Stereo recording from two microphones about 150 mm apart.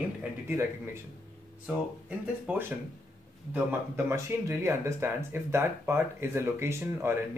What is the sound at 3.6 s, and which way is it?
Speech, 15° right (ahead or behind).